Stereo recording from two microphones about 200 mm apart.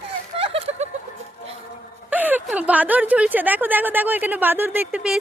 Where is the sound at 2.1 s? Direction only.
10° right (ahead or behind).